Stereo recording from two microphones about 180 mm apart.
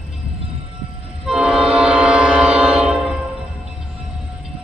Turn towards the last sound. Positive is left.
turn(degrees=-5)  # may be behind; listen again after turning